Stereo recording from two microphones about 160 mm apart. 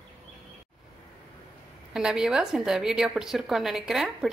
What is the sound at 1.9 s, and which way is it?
A woman's voice, 5° right (ahead or behind).